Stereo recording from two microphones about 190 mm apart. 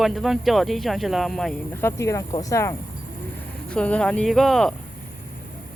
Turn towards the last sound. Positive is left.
turn(degrees=0)  # may be behind; listen again after turning